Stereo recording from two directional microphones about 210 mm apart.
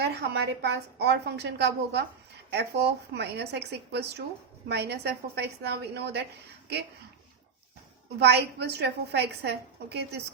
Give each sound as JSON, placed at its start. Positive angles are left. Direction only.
{"t": 0.0, "sound": "a woman's voice", "side_deg": -50}
{"t": 8.2, "sound": "a woman's voice", "side_deg": -55}